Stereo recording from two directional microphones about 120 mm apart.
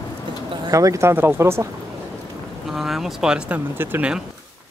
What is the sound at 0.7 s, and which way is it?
Speech, 25° right (ahead or behind).